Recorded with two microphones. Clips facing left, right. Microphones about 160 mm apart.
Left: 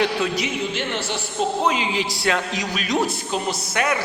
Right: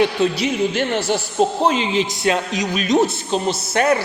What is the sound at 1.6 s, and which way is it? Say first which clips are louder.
A man's voice: right 4 dB; 25° right (ahead or behind).